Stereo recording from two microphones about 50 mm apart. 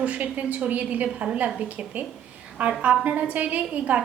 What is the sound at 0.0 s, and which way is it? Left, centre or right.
A woman's voice, right.